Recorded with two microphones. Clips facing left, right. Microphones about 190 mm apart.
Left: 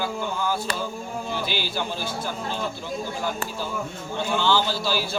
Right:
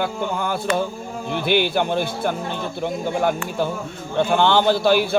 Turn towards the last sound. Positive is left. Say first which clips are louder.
# right 8 dB
turn(degrees=-60)  # may be behind; listen again after turning